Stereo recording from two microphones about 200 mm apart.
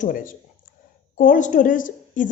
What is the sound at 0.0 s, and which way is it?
A woman's voice, 45° left (ahead or behind).